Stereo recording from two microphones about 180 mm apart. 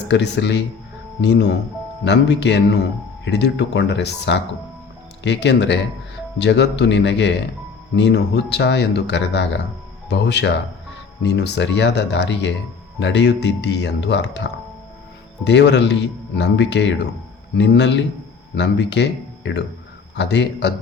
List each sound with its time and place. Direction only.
0.1 s speech: 80° left
15.4 s speech: 75° left (ahead or behind)